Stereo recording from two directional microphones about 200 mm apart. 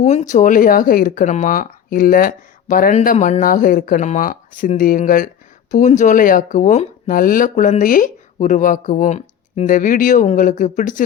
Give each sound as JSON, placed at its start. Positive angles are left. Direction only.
{"t": 0.0, "sound": "speech", "side_deg": 35}